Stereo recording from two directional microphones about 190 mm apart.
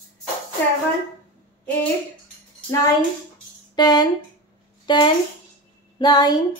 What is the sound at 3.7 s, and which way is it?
A child's voice, 20° left (ahead or behind).